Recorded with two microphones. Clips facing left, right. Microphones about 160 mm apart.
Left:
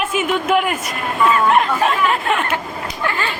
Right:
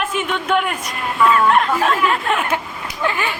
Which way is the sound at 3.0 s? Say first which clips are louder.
Right 2 dB; 15° right (ahead or behind).